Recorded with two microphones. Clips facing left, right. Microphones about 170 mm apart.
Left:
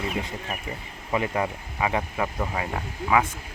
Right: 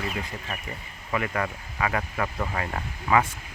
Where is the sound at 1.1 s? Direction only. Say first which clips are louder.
Left 2 dB; 20° left (ahead or behind).